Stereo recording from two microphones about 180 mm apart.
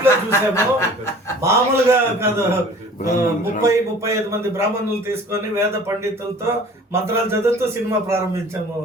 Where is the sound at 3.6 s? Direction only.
15° right (ahead or behind).